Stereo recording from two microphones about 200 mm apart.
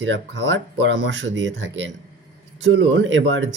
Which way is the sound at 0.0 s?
65° right (ahead or behind).